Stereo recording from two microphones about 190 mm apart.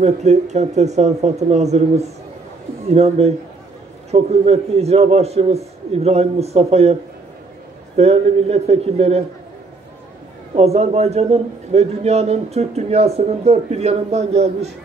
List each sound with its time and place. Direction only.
0.0 s a man's voice: 35° right (ahead or behind)
10.5 s a man's voice: 35° right (ahead or behind)